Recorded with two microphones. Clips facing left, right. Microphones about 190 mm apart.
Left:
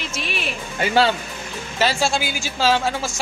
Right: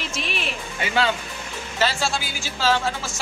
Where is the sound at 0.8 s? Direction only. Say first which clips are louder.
Left 5 dB; 35° left (ahead or behind).